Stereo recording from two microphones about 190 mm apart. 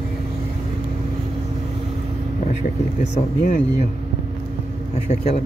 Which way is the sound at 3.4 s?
40° left (ahead or behind).